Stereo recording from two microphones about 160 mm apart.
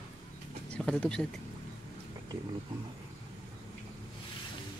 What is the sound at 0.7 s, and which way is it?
Speech, 5° left (ahead or behind).